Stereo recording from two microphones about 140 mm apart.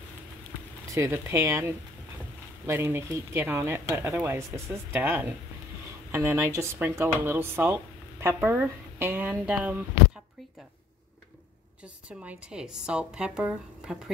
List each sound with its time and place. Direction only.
0.9 s speech: 20° right (ahead or behind)
12.1 s speech: 10° right (ahead or behind)